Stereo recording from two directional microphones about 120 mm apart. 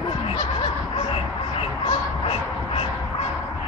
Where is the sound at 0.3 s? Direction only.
55° left (ahead or behind).